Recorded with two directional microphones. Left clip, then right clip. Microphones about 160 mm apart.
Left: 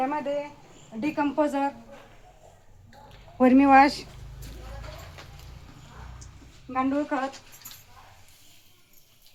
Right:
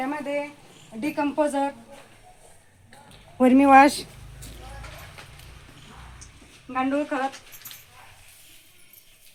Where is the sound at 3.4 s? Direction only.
55° right (ahead or behind).